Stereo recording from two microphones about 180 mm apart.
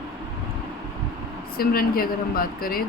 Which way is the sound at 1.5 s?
55° left (ahead or behind).